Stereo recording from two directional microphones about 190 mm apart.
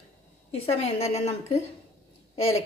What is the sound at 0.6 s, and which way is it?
A woman's voice, 30° left (ahead or behind).